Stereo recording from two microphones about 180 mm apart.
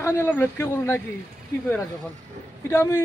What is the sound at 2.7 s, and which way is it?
Speech, 15° left (ahead or behind).